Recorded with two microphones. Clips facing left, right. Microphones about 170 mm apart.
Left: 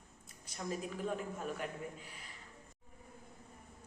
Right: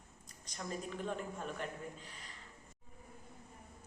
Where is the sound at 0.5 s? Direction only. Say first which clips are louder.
Left 1 dB; 5° left (ahead or behind).